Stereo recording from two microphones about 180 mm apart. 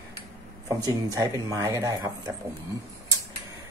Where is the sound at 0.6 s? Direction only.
20° right (ahead or behind).